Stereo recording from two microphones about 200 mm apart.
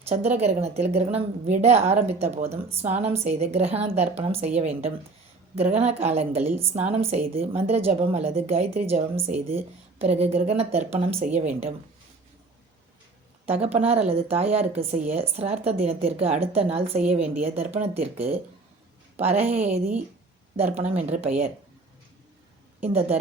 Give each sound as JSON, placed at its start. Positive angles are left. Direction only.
{"t": 0.0, "sound": "a woman's voice", "side_deg": -30}
{"t": 13.4, "sound": "a woman's voice", "side_deg": -30}
{"t": 19.2, "sound": "a woman's voice", "side_deg": -10}
{"t": 20.9, "sound": "a woman's voice", "side_deg": -30}
{"t": 22.8, "sound": "a woman's voice", "side_deg": -30}